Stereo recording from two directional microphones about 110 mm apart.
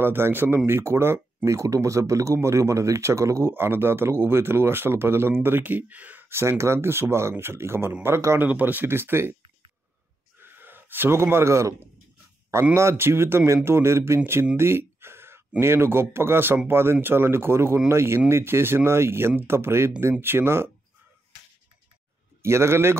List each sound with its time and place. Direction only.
0.0 s speech: 20° right (ahead or behind)
10.4 s speech: 20° right (ahead or behind)
14.6 s a sound: 20° right (ahead or behind)
15.6 s speech: 20° right (ahead or behind)
22.4 s speech: 25° right (ahead or behind)